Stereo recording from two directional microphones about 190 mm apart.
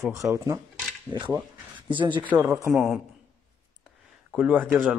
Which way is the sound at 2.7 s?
Centre (ahead or behind).